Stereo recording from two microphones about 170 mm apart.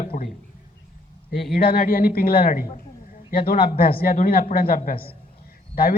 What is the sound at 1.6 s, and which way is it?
A man's voice, 65° left (ahead or behind).